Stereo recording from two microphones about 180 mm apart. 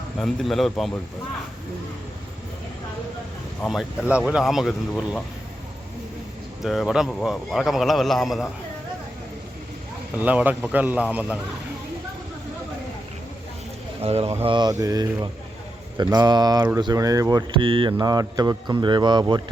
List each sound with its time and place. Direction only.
0.2 s a man's voice: centre (ahead or behind)
3.6 s a man's voice: centre (ahead or behind)
6.6 s a man's voice: centre (ahead or behind)
10.2 s speech: 10° right (ahead or behind)
14.0 s speech: 35° right (ahead or behind)